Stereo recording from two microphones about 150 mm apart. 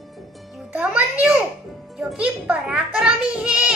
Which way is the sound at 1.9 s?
Centre (ahead or behind).